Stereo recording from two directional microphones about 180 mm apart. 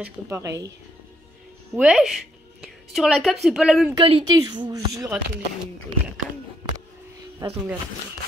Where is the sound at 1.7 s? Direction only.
5° right (ahead or behind).